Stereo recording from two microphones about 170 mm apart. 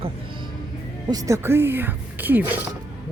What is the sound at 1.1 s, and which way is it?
Speech, 15° right (ahead or behind).